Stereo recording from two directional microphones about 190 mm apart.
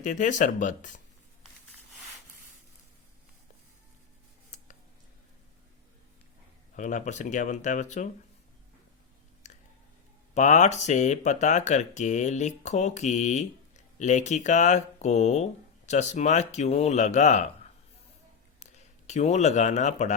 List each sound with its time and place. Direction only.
0.0 s speech: 40° left (ahead or behind)
6.7 s speech: 40° left (ahead or behind)
10.3 s speech: 40° left (ahead or behind)
18.6 s speech: 35° left (ahead or behind)